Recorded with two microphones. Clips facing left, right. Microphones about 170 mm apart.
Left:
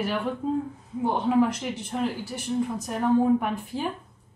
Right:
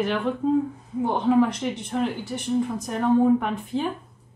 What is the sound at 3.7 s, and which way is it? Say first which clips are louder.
Speech: right 6 dB; 25° right (ahead or behind).